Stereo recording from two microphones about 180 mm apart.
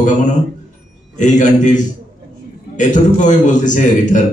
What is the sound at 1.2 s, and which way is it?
A man's voice, 40° left (ahead or behind).